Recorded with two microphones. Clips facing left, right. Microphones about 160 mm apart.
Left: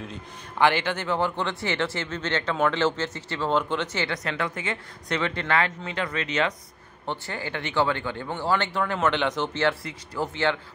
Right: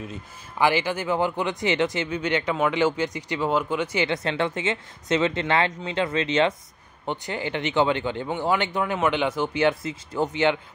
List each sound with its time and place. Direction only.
0.0 s speech: 5° right (ahead or behind)
4.1 s speech: 25° right (ahead or behind)